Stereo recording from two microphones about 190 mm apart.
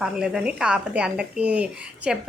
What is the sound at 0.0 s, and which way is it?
A woman's voice, 5° right (ahead or behind).